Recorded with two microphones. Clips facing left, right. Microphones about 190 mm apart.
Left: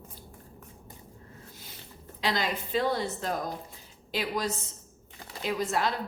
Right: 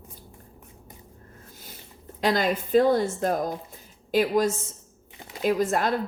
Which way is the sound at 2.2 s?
50° right (ahead or behind).